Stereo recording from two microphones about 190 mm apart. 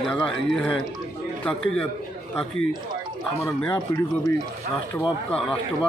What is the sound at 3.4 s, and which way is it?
A man's voice, 15° left (ahead or behind).